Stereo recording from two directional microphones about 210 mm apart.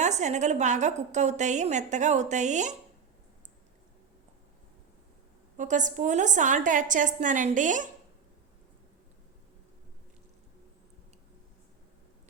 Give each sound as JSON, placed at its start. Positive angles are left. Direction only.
{"t": 0.0, "sound": "a woman's voice", "side_deg": -35}
{"t": 5.5, "sound": "a woman's voice", "side_deg": -35}